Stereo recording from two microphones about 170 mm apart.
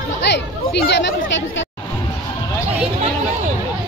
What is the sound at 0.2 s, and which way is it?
Chatter, 85° left.